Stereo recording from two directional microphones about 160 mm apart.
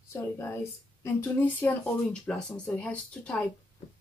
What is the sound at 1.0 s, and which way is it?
Speech, 10° left (ahead or behind).